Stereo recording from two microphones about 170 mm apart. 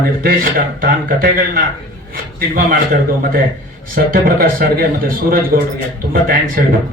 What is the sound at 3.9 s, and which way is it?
Speech, 60° right (ahead or behind).